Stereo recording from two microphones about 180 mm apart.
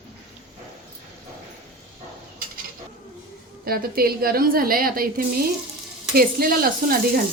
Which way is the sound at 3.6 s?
55° right (ahead or behind).